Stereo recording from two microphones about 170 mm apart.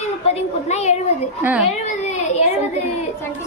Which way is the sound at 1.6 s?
40° left (ahead or behind).